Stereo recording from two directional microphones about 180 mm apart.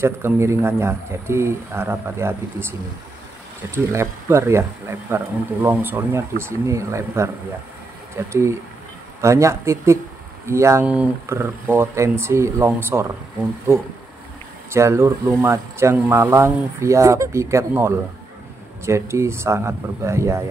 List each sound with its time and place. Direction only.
0.0 s speech: 15° right (ahead or behind)
3.7 s speech: 15° right (ahead or behind)
8.3 s speech: 15° right (ahead or behind)
14.7 s speech: 15° right (ahead or behind)